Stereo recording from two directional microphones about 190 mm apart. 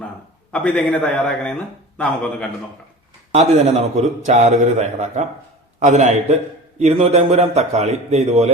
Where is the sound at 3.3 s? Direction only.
35° right (ahead or behind).